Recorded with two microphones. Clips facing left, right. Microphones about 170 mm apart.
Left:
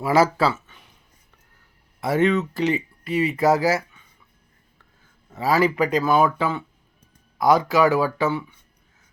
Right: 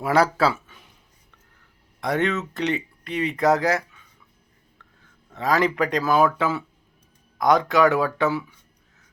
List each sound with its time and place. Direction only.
0.0 s speech: centre (ahead or behind)
2.0 s speech: 5° left (ahead or behind)
5.3 s speech: 5° left (ahead or behind)